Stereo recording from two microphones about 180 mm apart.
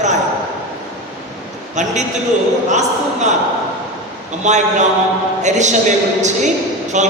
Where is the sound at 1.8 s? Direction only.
40° right (ahead or behind).